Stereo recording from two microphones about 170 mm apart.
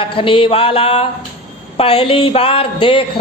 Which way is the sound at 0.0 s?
30° left (ahead or behind).